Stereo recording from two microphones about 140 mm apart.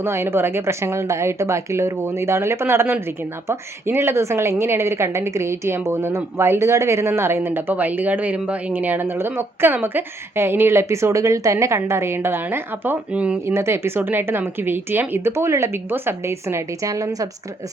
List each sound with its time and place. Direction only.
0.0 s a woman's voice: 20° right (ahead or behind)